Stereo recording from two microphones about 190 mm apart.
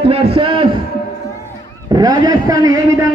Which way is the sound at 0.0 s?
30° right (ahead or behind).